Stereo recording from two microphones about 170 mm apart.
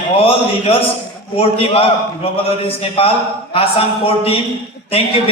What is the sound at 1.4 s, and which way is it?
A man's voice, 35° left (ahead or behind).